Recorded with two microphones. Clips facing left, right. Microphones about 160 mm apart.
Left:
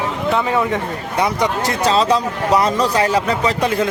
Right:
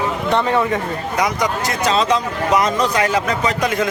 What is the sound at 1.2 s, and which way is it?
Speech, 30° left (ahead or behind).